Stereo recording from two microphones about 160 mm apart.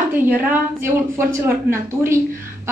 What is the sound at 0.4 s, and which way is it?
A woman's voice, 15° right (ahead or behind).